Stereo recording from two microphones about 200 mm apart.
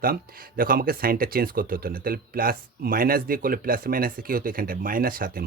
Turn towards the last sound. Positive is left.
turn(degrees=-45)  # may be behind; listen again after turning